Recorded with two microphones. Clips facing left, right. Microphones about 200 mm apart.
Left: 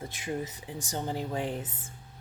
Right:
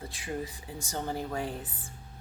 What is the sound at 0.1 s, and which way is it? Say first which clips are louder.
A woman's voice: left 1 dB; 20° left (ahead or behind).